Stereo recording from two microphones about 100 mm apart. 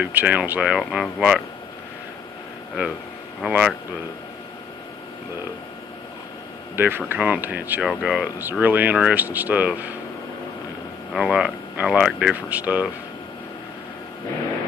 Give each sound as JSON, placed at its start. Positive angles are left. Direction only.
{"t": 0.0, "sound": "speech", "side_deg": -15}
{"t": 3.4, "sound": "speech", "side_deg": -10}
{"t": 6.7, "sound": "speech", "side_deg": -20}
{"t": 11.1, "sound": "speech", "side_deg": -5}